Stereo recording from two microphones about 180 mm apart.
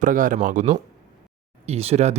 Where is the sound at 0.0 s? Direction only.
45° right (ahead or behind).